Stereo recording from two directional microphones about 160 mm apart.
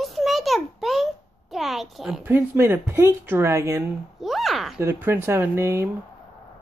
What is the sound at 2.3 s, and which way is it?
Speech, 15° right (ahead or behind).